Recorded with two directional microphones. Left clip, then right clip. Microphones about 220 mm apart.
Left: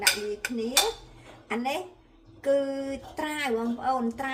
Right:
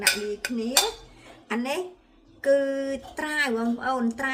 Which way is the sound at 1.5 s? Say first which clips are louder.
Right 1 dB; 30° right (ahead or behind).